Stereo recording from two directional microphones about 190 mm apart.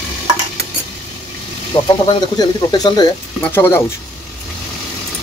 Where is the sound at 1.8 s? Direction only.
20° left (ahead or behind).